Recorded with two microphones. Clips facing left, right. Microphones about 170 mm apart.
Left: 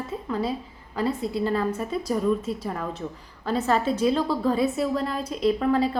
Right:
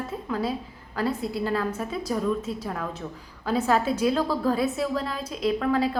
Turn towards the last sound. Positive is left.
turn(degrees=0)  # may be behind; listen again after turning